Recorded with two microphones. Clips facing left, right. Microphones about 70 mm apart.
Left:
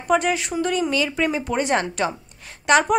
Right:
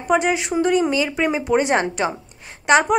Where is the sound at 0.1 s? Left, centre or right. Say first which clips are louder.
Right 2 dB; centre.